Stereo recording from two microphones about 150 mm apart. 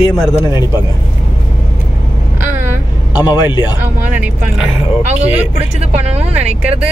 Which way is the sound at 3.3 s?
30° left (ahead or behind).